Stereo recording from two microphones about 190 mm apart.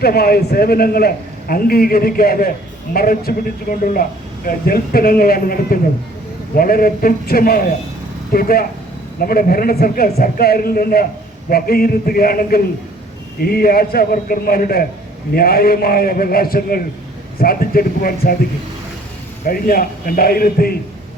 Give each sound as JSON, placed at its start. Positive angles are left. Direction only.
{"t": 0.0, "sound": "a man's voice", "side_deg": 55}
{"t": 19.5, "sound": "a man's voice", "side_deg": 50}